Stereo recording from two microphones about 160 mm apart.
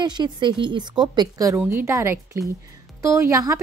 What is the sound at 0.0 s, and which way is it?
A woman's voice, 30° right (ahead or behind).